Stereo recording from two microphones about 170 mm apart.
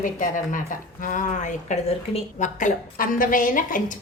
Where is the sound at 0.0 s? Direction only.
50° left (ahead or behind).